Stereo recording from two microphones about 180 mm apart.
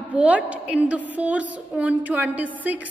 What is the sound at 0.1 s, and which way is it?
A woman's voice, 5° right (ahead or behind).